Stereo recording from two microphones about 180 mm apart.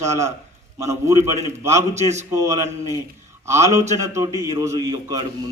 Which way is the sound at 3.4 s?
15° right (ahead or behind).